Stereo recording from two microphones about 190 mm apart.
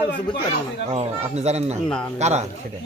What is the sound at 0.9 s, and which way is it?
Speech, 35° right (ahead or behind).